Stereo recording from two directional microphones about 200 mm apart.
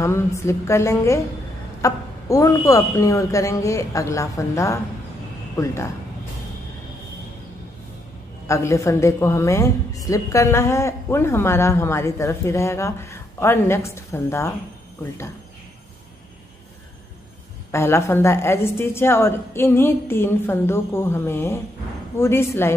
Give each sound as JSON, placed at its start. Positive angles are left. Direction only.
{"t": 0.0, "sound": "a woman's voice", "side_deg": 15}
{"t": 8.5, "sound": "a woman's voice", "side_deg": 15}
{"t": 17.6, "sound": "a woman's voice", "side_deg": 15}